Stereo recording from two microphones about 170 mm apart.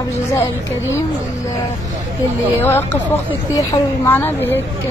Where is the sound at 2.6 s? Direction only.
15° left (ahead or behind).